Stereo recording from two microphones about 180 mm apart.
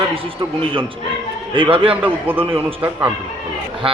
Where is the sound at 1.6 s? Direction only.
30° right (ahead or behind).